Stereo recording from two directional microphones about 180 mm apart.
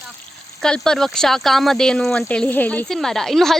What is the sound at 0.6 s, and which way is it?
Speech, 5° left (ahead or behind).